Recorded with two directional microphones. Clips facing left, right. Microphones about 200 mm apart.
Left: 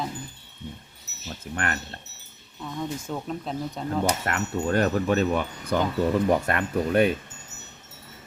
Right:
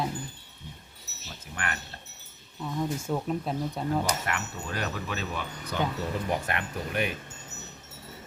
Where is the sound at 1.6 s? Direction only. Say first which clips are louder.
Left 5 dB; 45° left (ahead or behind).